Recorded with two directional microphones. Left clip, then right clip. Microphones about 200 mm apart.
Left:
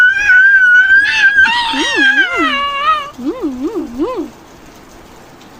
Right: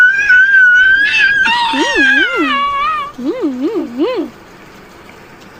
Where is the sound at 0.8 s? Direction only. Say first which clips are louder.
Even; 20° left (ahead or behind).